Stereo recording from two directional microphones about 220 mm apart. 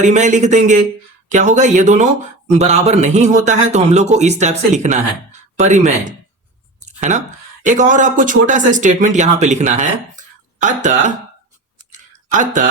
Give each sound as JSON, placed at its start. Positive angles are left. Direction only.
{"t": 0.0, "sound": "a man's voice", "side_deg": -35}
{"t": 6.8, "sound": "a sound", "side_deg": -30}
{"t": 7.6, "sound": "a man's voice", "side_deg": -35}
{"t": 11.8, "sound": "clicking", "side_deg": -35}